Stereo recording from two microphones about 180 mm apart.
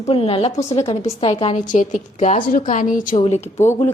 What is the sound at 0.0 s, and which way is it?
A woman's voice, 30° left (ahead or behind).